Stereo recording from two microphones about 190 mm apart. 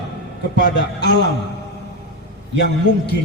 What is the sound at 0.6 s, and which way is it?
Speech, 65° left (ahead or behind).